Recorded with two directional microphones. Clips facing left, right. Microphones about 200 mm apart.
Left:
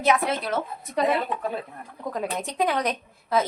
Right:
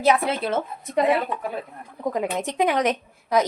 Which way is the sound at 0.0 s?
30° right (ahead or behind).